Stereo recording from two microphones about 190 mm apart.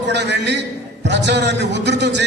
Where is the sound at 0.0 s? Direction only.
65° right (ahead or behind).